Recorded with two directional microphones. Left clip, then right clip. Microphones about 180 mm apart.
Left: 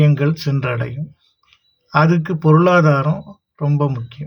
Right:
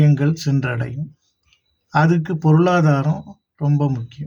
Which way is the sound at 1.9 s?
15° right (ahead or behind).